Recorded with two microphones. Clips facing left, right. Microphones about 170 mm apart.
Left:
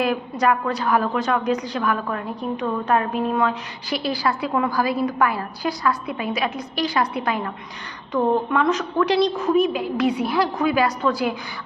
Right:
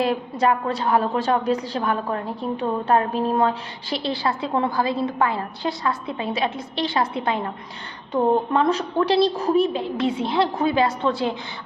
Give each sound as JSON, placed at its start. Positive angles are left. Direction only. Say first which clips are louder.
{"t": 0.0, "sound": "a woman's voice", "louder": "even", "side_deg": -25}